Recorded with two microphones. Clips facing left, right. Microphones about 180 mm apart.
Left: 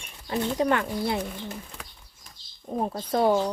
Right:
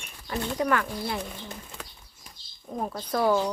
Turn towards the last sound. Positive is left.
turn(degrees=25)  # may be behind; listen again after turning